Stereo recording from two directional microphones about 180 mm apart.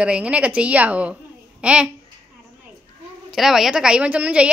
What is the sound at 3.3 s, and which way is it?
A woman's voice, centre (ahead or behind).